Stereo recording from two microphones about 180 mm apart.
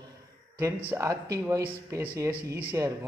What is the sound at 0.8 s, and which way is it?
A man's voice, 15° right (ahead or behind).